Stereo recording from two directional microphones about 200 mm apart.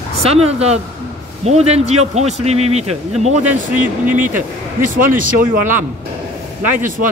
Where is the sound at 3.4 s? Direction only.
5° right (ahead or behind).